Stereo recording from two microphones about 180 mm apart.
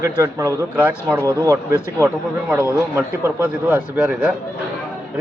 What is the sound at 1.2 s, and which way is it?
A man's voice, 20° right (ahead or behind).